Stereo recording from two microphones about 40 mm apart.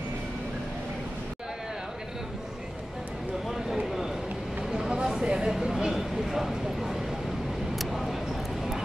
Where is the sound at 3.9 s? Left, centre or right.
Centre.